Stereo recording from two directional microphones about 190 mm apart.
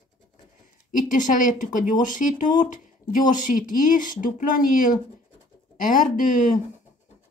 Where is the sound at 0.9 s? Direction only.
45° left (ahead or behind).